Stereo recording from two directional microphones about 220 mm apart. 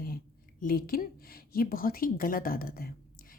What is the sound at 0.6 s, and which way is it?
Speech, 40° left (ahead or behind).